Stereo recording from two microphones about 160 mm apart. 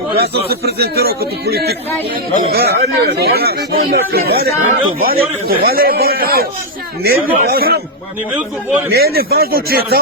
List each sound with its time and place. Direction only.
0.2 s speech: 80° right
3.9 s a man's voice: 75° right (ahead or behind)
8.9 s a man's voice: 75° right (ahead or behind)